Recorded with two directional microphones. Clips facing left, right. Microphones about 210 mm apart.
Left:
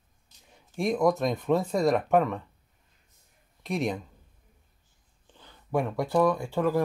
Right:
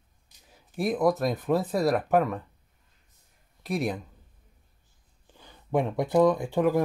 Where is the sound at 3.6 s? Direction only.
Centre (ahead or behind).